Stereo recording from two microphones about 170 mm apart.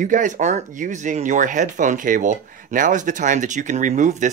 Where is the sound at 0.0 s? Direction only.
50° right (ahead or behind).